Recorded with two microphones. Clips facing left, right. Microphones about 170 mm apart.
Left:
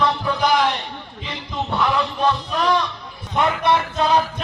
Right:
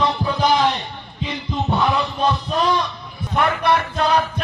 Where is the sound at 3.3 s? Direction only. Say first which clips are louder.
Even; 20° left (ahead or behind).